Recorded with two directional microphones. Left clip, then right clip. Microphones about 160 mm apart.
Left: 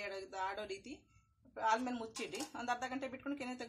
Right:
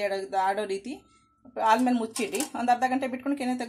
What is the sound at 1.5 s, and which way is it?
Speech, 40° right (ahead or behind).